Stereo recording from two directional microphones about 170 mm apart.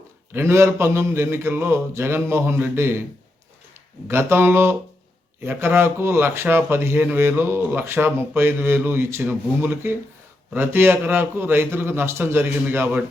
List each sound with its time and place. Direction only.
0.3 s speech: 15° right (ahead or behind)
4.1 s speech: 15° right (ahead or behind)